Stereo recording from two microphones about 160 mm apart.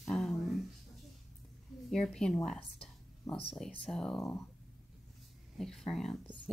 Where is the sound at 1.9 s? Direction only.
5° left (ahead or behind).